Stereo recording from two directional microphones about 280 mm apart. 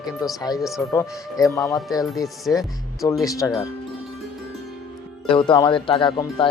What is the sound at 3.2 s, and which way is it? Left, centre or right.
Speech, centre.